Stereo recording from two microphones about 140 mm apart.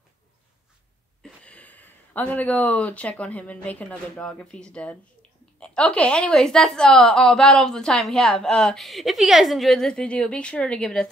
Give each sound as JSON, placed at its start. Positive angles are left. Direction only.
{"t": 1.2, "sound": "a woman's voice", "side_deg": 10}